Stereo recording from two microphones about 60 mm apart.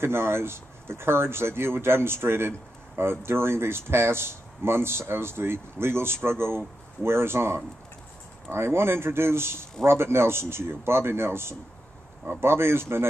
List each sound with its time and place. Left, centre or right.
0.0 s speech: right